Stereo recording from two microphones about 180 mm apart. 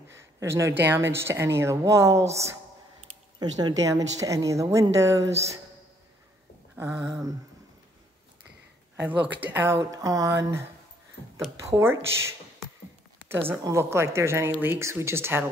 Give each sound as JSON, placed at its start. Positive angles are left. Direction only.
{"t": 0.1, "sound": "speech", "side_deg": -15}
{"t": 6.8, "sound": "speech", "side_deg": -15}
{"t": 9.3, "sound": "speech", "side_deg": -10}
{"t": 11.6, "sound": "speech", "side_deg": -15}